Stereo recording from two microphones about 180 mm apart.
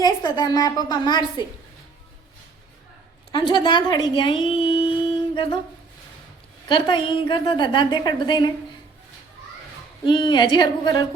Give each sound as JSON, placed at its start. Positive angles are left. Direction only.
{"t": 0.0, "sound": "a woman's voice", "side_deg": 20}
{"t": 3.3, "sound": "speech", "side_deg": 25}
{"t": 6.7, "sound": "a woman's voice", "side_deg": 25}
{"t": 10.1, "sound": "a woman's voice", "side_deg": 25}